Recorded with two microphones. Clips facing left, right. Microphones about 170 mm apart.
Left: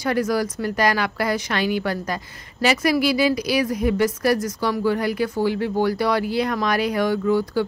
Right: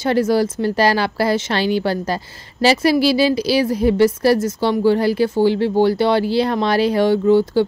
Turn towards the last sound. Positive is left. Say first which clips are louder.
# right 6 dB
turn(degrees=-30)  # may be behind; listen again after turning